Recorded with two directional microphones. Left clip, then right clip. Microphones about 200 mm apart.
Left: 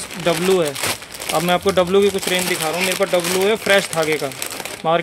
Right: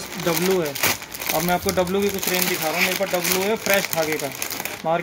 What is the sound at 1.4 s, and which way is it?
Speech, 45° left (ahead or behind).